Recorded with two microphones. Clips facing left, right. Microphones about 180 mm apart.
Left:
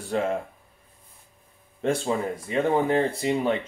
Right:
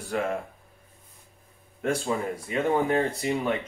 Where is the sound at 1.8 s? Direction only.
25° left (ahead or behind).